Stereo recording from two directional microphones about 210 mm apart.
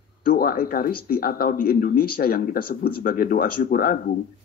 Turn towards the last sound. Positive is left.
turn(degrees=45)  # may be behind; listen again after turning